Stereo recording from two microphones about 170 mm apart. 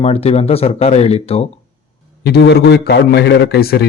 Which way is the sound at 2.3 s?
80° left.